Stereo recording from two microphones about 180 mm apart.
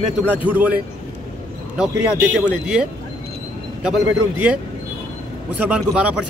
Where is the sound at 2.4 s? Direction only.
5° right (ahead or behind).